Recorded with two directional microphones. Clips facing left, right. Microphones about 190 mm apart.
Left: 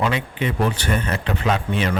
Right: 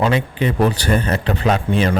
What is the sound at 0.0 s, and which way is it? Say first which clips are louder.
Speech: right 5 dB; 35° right (ahead or behind).